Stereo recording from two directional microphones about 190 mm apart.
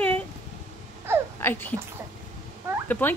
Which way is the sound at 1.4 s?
10° left (ahead or behind).